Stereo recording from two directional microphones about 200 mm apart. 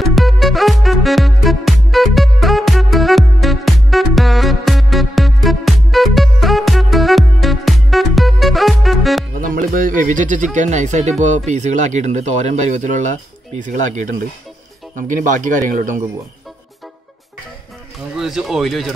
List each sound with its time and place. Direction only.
0.0 s music: centre (ahead or behind)
9.4 s speech: 45° right (ahead or behind)
15.0 s speech: 40° right (ahead or behind)
18.1 s speech: centre (ahead or behind)